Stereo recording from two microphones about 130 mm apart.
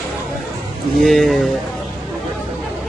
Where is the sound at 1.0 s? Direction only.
Centre (ahead or behind).